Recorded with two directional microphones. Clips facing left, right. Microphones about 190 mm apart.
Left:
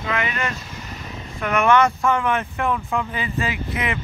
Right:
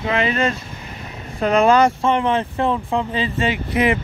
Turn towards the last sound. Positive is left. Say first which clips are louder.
# right 7 dB
turn(degrees=-30)  # may be behind; listen again after turning